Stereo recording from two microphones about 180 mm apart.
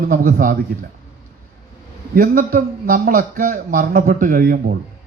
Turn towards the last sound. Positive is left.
turn(degrees=-55)  # may be behind; listen again after turning